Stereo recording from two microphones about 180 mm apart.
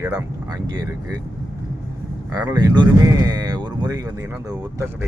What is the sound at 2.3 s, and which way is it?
Speech, 20° right (ahead or behind).